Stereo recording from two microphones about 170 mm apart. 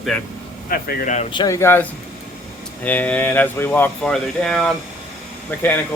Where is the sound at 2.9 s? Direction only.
10° left (ahead or behind).